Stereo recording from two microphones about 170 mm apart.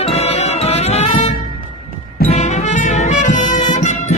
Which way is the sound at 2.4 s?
45° left (ahead or behind).